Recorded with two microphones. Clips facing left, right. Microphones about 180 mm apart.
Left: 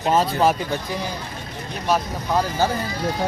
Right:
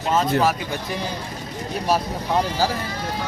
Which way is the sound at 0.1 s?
30° left (ahead or behind).